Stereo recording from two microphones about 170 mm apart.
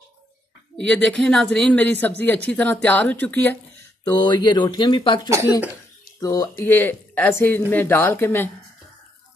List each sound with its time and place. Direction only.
0.8 s speech: 5° left (ahead or behind)
4.0 s speech: 25° left (ahead or behind)